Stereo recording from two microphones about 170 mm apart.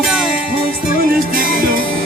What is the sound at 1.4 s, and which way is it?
Music, 60° right (ahead or behind).